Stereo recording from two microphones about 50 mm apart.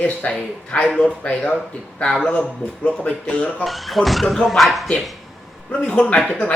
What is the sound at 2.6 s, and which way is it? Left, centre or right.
Speech, left.